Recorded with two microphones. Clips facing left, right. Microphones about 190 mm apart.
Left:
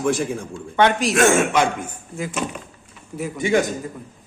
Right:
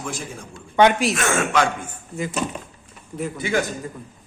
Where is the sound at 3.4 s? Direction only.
20° left (ahead or behind).